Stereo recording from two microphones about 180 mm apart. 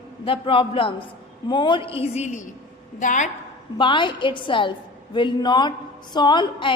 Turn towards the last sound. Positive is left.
turn(degrees=25)  # may be behind; listen again after turning